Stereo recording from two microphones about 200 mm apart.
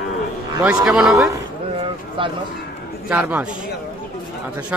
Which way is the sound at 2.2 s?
25° right (ahead or behind).